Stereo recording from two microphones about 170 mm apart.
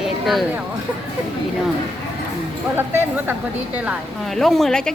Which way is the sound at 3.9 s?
Centre (ahead or behind).